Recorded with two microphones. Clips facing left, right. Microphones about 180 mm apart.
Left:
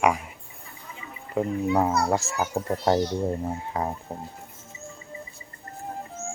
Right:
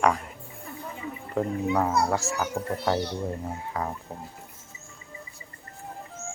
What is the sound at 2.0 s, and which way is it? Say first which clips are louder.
Speech: left 2 dB; 20° left (ahead or behind).